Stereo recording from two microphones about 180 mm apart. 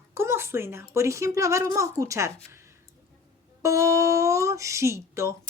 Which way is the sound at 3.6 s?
15° right (ahead or behind).